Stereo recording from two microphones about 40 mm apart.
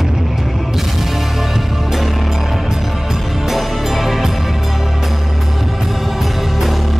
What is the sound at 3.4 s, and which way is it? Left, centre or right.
Music, centre.